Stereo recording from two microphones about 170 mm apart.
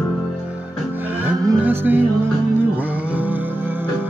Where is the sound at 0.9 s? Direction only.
10° right (ahead or behind).